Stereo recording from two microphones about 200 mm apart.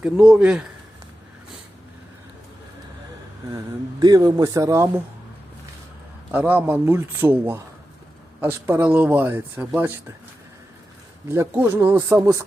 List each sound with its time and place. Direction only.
0.0 s a man's voice: 5° right (ahead or behind)
4.0 s speech: 20° right (ahead or behind)
6.3 s speech: 10° right (ahead or behind)
11.3 s speech: 10° right (ahead or behind)